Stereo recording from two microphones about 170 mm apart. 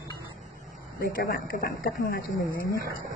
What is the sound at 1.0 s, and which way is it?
Speech, 60° left (ahead or behind).